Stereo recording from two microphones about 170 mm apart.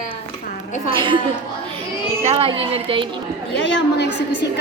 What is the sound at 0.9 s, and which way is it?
Speech, 30° right (ahead or behind).